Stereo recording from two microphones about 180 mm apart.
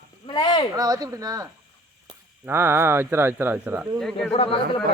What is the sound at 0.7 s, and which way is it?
Speech, 20° right (ahead or behind).